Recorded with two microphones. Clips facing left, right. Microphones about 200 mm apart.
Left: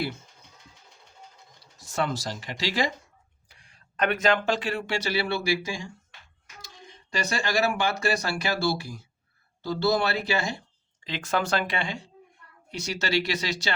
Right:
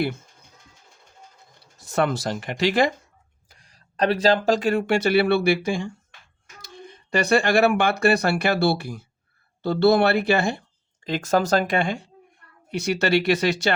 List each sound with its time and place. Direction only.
1.9 s speech: 60° right (ahead or behind)
3.5 s speech: 40° right (ahead or behind); by 5.9 s 60° right (ahead or behind)
7.1 s speech: 60° right (ahead or behind)
11.0 s speech: 45° right (ahead or behind)